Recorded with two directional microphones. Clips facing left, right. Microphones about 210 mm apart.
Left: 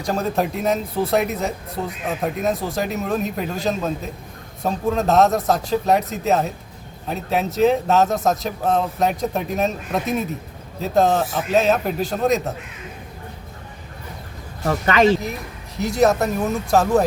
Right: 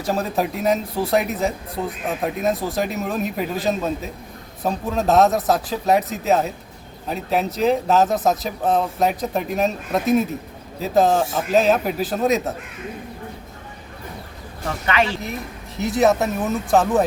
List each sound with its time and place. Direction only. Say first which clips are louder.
0.0 s speech: left 1 dB; 5° right (ahead or behind)
14.6 s speech: left 5 dB; 40° left (ahead or behind)
15.8 s speech: even; centre (ahead or behind)